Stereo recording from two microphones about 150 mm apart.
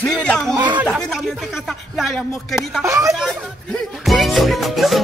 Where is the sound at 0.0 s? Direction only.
10° left (ahead or behind).